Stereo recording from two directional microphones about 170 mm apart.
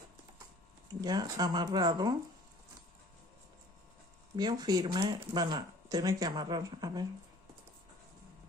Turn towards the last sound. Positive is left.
turn(degrees=-25)  # may be behind; listen again after turning